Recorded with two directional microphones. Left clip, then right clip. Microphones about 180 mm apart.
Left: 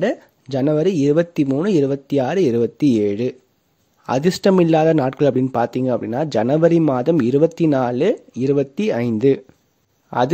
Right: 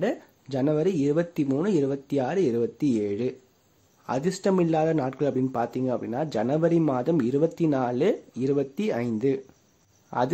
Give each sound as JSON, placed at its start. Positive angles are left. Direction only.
{"t": 0.0, "sound": "speech", "side_deg": 35}